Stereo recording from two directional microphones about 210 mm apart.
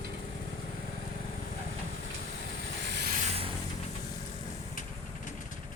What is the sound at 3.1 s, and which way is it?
Vehicle, 30° right (ahead or behind).